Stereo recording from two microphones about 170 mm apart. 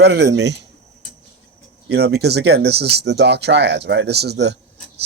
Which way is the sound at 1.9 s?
75° right (ahead or behind).